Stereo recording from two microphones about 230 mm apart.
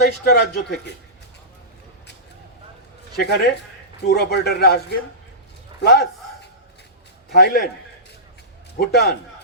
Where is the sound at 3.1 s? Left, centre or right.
Left.